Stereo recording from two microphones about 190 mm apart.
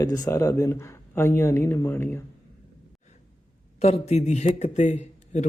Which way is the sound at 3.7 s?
35° left (ahead or behind).